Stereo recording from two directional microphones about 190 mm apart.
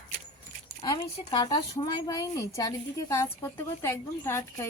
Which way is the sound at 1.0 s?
20° left (ahead or behind).